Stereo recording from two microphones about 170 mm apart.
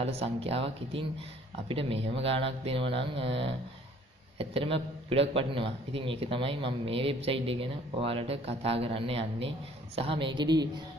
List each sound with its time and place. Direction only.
0.0 s a man's voice: 35° right (ahead or behind)